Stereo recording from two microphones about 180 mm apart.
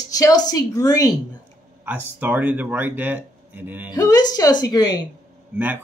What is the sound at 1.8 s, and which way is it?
Speech, 10° right (ahead or behind).